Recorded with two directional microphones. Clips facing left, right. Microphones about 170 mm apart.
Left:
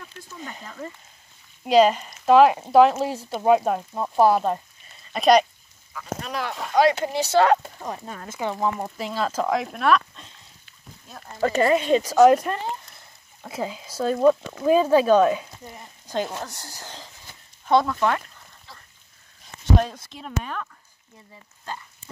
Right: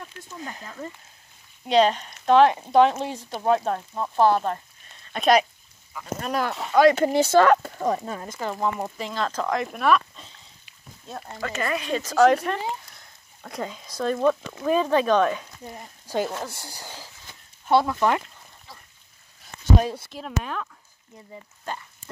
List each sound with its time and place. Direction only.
1.7 s speech: 5° left (ahead or behind)
6.2 s speech: 45° right (ahead or behind)
7.8 s speech: 90° right
8.3 s speech: 5° left (ahead or behind)
11.4 s speech: 30° left (ahead or behind)
12.0 s speech: 10° left (ahead or behind)
16.5 s speech: 10° right (ahead or behind)
19.8 s speech: 5° right (ahead or behind)